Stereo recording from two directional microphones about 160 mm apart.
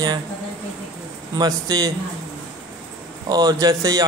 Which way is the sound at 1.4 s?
25° right (ahead or behind).